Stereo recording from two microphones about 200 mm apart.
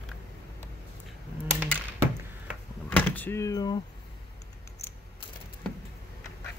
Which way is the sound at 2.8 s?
10° left (ahead or behind).